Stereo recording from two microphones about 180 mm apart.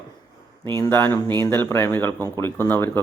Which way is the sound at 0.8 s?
10° left (ahead or behind).